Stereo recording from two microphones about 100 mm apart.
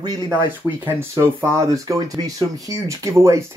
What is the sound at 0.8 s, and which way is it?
Speech, 25° right (ahead or behind).